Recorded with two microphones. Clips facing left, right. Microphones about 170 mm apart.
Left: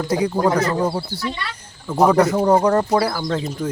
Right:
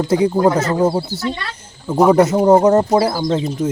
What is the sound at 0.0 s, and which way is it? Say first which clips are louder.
Speech: right 5 dB; 25° right (ahead or behind).